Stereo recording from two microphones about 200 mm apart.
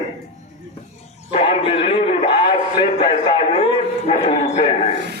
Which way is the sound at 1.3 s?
30° left (ahead or behind).